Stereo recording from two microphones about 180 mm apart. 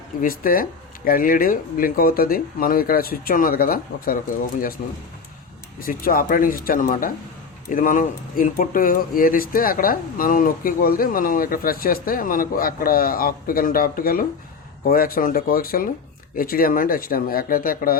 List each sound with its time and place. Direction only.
0.2 s speech: 50° left (ahead or behind)